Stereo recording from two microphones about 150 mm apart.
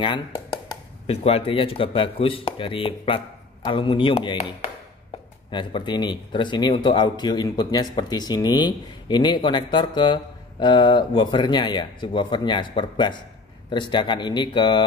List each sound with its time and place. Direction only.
1.0 s speech: 40° left (ahead or behind)